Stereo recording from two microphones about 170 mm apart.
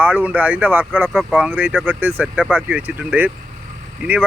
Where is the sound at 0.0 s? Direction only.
10° right (ahead or behind).